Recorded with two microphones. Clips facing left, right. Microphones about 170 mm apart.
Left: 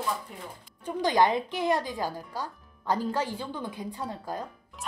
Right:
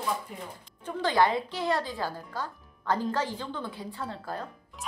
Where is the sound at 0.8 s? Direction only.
15° left (ahead or behind).